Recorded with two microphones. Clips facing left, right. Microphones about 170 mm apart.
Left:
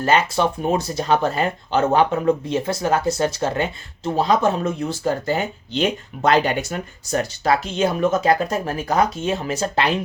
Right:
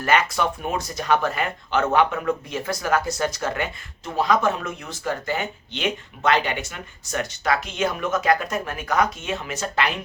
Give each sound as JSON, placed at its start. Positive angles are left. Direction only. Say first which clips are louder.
{"t": 0.0, "sound": "speech", "louder": "left 3 dB", "side_deg": 30}